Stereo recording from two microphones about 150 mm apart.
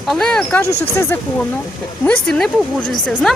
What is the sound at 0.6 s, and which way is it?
Speech, 90° left.